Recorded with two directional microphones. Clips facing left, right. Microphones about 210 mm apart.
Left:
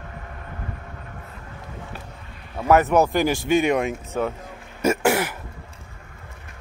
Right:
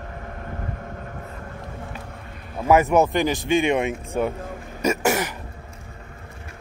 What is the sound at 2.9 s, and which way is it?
Speech, centre (ahead or behind).